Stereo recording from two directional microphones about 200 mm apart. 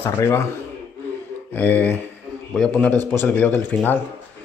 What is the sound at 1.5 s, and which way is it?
Speech, 10° left (ahead or behind).